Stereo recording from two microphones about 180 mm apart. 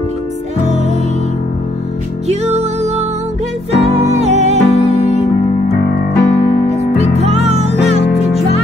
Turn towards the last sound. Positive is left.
turn(degrees=-35)  # may be behind; listen again after turning